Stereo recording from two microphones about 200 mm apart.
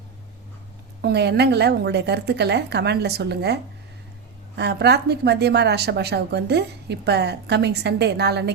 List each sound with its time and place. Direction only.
1.0 s speech: 55° right (ahead or behind)